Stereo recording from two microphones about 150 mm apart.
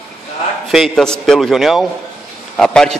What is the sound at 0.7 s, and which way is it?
Speech, centre (ahead or behind).